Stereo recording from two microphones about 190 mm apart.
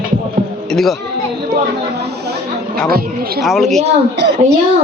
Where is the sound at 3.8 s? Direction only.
60° right (ahead or behind).